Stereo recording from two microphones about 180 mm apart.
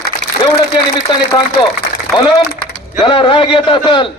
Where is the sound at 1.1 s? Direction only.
25° left (ahead or behind).